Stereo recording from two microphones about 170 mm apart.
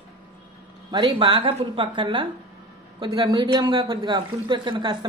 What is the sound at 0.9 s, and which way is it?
A man's voice, 25° right (ahead or behind).